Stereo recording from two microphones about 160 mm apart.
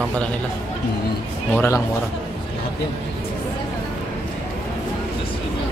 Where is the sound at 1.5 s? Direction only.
15° left (ahead or behind).